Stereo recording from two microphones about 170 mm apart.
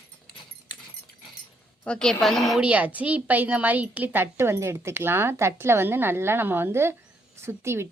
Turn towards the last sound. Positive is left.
turn(degrees=-15)  # may be behind; listen again after turning